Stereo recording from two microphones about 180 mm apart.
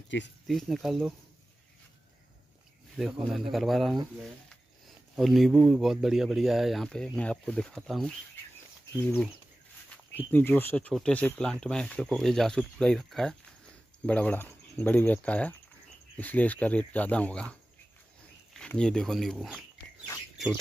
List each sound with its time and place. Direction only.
0.1 s speech: 85° left
0.5 s speech: centre (ahead or behind)
3.0 s speech: centre (ahead or behind)
5.1 s speech: centre (ahead or behind)